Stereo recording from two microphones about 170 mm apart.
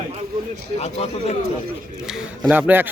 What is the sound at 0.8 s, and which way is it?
Speech, 40° left (ahead or behind).